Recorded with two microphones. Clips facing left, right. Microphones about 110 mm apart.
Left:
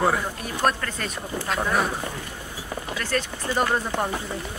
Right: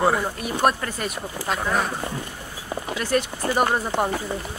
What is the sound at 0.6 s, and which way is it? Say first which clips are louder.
Speech: right 2 dB; 15° right (ahead or behind).